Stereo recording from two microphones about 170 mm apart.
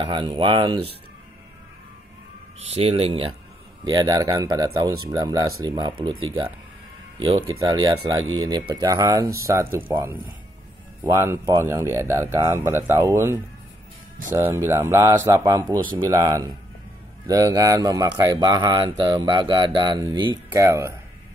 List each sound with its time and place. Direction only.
0.0 s speech: 30° right (ahead or behind)
2.7 s speech: 35° right (ahead or behind); by 20.9 s 20° right (ahead or behind)